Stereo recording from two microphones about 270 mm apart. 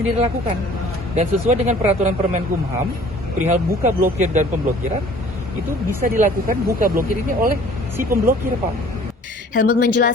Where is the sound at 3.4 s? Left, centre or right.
Right.